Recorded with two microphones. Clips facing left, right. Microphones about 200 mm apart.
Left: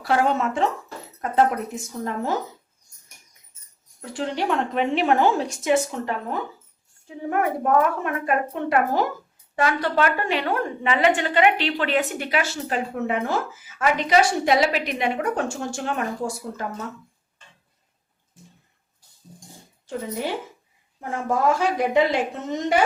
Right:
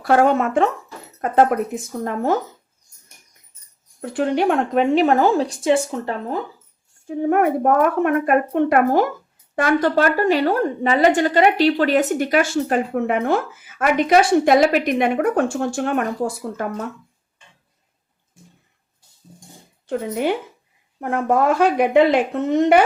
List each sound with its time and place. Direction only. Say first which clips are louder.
0.0 s a woman's voice: right 5 dB; 50° right (ahead or behind)
4.0 s speech: right 7 dB; 55° right (ahead or behind); by 6.4 s 30° right (ahead or behind)
7.1 s a woman's voice: right 7 dB; 55° right (ahead or behind)
19.9 s speech: right 6 dB; 60° right (ahead or behind)